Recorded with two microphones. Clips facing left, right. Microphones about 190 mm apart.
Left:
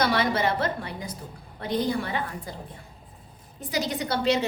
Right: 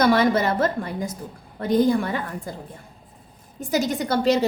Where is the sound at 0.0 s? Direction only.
45° right (ahead or behind).